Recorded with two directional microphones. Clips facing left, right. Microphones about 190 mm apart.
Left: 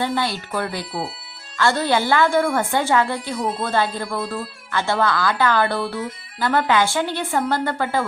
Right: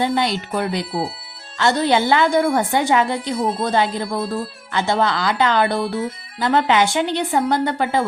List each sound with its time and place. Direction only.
0.0 s a woman's voice: 20° right (ahead or behind)